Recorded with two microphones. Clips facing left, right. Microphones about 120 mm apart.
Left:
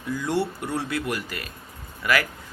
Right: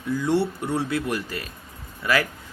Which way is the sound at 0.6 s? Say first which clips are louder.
Right 3 dB; 25° right (ahead or behind).